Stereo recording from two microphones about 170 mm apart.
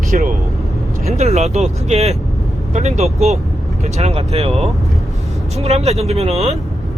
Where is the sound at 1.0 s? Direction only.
40° right (ahead or behind).